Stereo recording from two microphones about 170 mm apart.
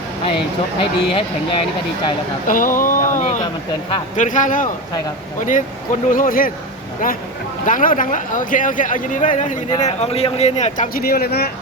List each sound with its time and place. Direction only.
0.8 s speech: 30° left (ahead or behind)
2.5 s speech: 50° left (ahead or behind)
3.2 s speech: 30° left (ahead or behind)
4.2 s speech: 50° left (ahead or behind)
7.6 s speech: 50° left (ahead or behind)
9.8 s speech: 40° left (ahead or behind); by 11.5 s 70° left (ahead or behind)